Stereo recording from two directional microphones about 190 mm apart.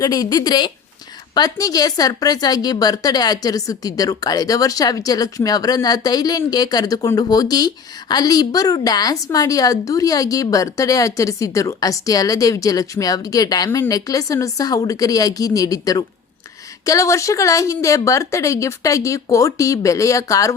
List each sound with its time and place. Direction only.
0.0 s a woman's voice: 20° left (ahead or behind)